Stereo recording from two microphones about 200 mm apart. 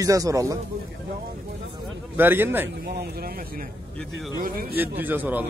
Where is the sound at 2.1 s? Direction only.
10° right (ahead or behind).